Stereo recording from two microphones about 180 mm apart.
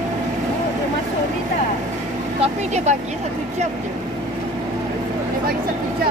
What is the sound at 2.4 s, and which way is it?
Vehicle, 40° right (ahead or behind).